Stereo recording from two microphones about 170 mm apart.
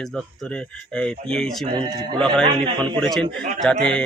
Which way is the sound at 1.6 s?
30° right (ahead or behind).